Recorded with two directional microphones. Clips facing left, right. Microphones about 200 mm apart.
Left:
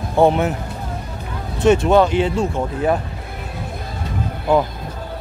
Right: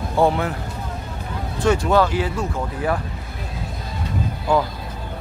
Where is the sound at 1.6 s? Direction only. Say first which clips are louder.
Left 4 dB; 20° left (ahead or behind).